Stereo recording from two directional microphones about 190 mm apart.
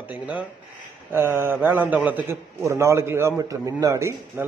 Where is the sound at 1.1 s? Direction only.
10° right (ahead or behind).